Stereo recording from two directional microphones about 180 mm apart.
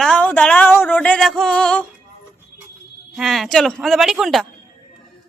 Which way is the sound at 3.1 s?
Centre (ahead or behind).